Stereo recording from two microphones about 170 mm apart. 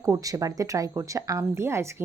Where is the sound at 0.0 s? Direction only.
20° right (ahead or behind).